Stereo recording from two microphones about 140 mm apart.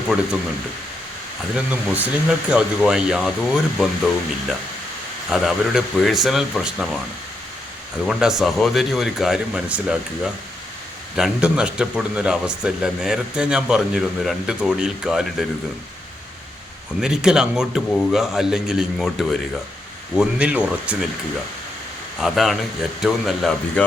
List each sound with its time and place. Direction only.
1.7 s a man's voice: 10° right (ahead or behind)
8.0 s a man's voice: 5° right (ahead or behind)
11.1 s a man's voice: 5° right (ahead or behind)
17.0 s a man's voice: 5° right (ahead or behind)
20.1 s speech: 10° right (ahead or behind)
22.2 s a man's voice: centre (ahead or behind)